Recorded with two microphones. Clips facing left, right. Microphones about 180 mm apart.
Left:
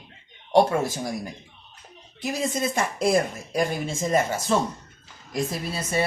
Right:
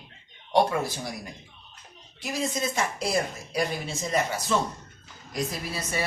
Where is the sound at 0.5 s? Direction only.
45° left (ahead or behind).